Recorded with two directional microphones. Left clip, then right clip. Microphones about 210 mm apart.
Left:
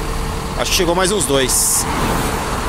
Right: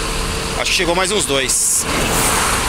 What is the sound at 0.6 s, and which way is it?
Speech, 20° left (ahead or behind).